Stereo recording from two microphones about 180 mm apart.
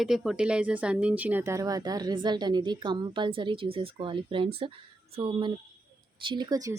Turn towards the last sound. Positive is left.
turn(degrees=-20)  # may be behind; listen again after turning